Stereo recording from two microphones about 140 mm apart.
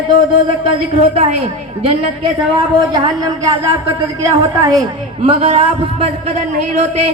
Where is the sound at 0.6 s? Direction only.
45° right (ahead or behind).